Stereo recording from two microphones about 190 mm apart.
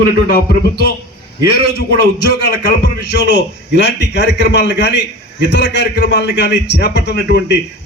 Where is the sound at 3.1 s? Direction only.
65° left (ahead or behind).